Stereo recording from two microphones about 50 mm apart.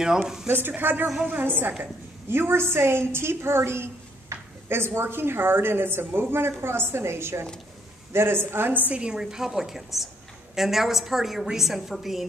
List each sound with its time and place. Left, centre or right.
0.0 s a woman's voice: centre
0.5 s a woman's voice: right
8.9 s a woman's voice: centre